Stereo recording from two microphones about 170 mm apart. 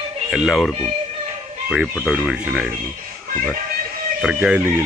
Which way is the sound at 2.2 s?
5° right (ahead or behind).